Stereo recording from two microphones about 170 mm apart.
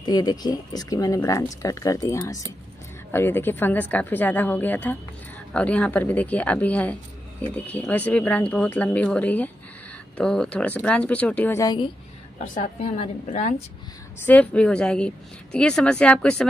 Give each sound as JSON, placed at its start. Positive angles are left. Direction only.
{"t": 0.0, "sound": "a woman's voice", "side_deg": 25}
{"t": 11.6, "sound": "speech", "side_deg": 25}
{"t": 12.9, "sound": "a woman's voice", "side_deg": 45}
{"t": 14.2, "sound": "a woman's voice", "side_deg": 10}